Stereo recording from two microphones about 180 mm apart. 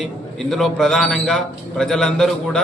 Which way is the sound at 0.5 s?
Centre (ahead or behind).